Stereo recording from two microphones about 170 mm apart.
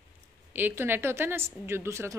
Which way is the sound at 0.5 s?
10° right (ahead or behind).